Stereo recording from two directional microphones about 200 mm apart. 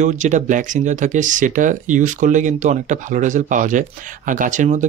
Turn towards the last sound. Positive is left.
turn(degrees=-40)  # may be behind; listen again after turning